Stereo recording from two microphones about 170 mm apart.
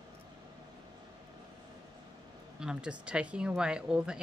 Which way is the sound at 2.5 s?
5° right (ahead or behind).